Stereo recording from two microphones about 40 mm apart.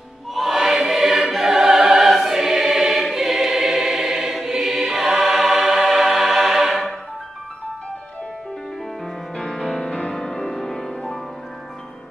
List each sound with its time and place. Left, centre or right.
0.3 s choir: centre
9.4 s music: centre